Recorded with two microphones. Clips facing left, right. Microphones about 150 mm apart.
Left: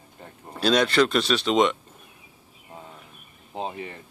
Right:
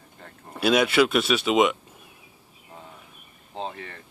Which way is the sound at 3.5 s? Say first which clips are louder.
Left 2 dB; 15° left (ahead or behind).